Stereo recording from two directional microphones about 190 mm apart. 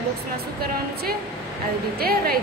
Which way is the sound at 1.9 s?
50° right (ahead or behind).